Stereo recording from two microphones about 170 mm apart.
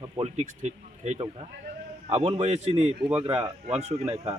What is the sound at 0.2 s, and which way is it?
Speech, 40° right (ahead or behind).